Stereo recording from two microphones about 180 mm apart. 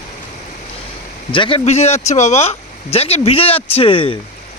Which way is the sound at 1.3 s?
25° left (ahead or behind).